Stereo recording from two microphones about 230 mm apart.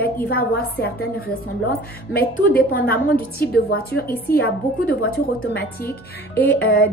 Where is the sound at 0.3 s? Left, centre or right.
Left.